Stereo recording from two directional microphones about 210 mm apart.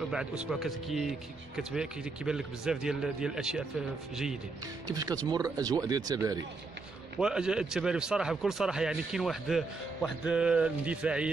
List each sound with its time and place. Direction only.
0.1 s speech: 5° right (ahead or behind)
4.8 s speech: 20° right (ahead or behind)
7.2 s speech: 5° right (ahead or behind)